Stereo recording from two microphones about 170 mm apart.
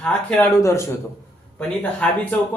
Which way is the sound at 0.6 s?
15° left (ahead or behind).